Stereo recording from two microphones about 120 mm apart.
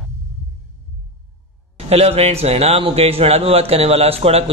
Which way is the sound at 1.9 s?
60° right (ahead or behind).